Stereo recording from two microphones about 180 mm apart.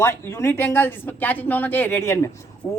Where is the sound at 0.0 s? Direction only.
15° left (ahead or behind).